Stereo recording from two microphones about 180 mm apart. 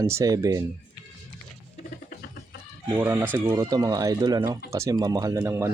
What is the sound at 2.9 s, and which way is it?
Speech, 10° right (ahead or behind).